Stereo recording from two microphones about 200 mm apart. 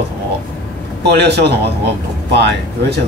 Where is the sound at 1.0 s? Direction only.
55° right (ahead or behind).